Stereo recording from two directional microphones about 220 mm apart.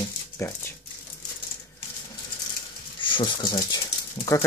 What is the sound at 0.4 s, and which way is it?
Speech, 10° left (ahead or behind).